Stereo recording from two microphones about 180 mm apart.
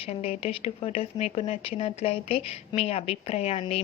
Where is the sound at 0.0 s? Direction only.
35° left (ahead or behind).